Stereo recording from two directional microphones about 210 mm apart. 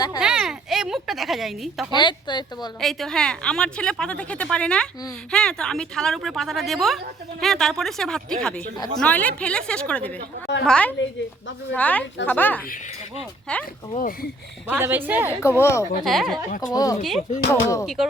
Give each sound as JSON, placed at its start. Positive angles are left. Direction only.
{"t": 0.2, "sound": "speech", "side_deg": -5}
{"t": 2.0, "sound": "speech", "side_deg": 20}
{"t": 2.8, "sound": "a woman's voice", "side_deg": 0}
{"t": 13.9, "sound": "speech", "side_deg": 40}
{"t": 14.7, "sound": "a woman's voice", "side_deg": -10}
{"t": 15.4, "sound": "speech", "side_deg": 10}
{"t": 16.0, "sound": "a woman's voice", "side_deg": 0}
{"t": 16.7, "sound": "speech", "side_deg": 15}
{"t": 17.8, "sound": "a woman's voice", "side_deg": 0}